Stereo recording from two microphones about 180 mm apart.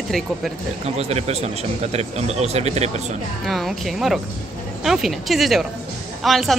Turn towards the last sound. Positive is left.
turn(degrees=0)  # may be behind; listen again after turning